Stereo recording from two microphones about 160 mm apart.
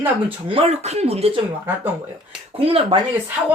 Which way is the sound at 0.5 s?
40° right (ahead or behind).